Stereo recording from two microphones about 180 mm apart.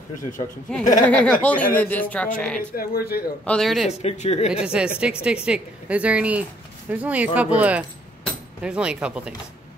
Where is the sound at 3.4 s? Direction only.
5° left (ahead or behind).